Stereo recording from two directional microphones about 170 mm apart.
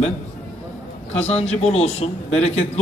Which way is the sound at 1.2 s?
40° left (ahead or behind).